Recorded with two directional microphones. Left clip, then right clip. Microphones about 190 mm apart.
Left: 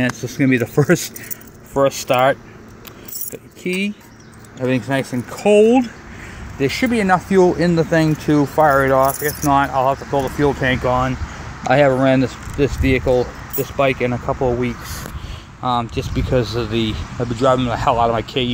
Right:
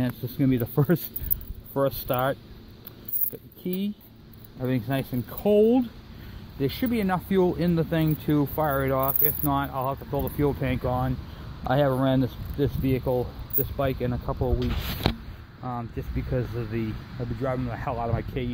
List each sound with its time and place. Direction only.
0.0 s speech: 5° right (ahead or behind)
1.7 s speech: 10° right (ahead or behind)
4.6 s speech: 5° right (ahead or behind)
6.6 s speech: 5° right (ahead or behind)
15.6 s speech: 15° left (ahead or behind)